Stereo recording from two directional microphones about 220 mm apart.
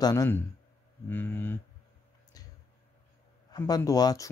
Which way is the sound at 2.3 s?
15° left (ahead or behind).